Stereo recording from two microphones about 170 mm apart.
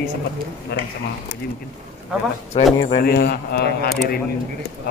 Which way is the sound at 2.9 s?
65° left (ahead or behind).